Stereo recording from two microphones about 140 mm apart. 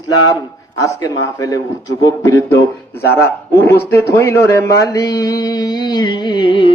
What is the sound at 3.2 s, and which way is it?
A man's voice, 20° left (ahead or behind).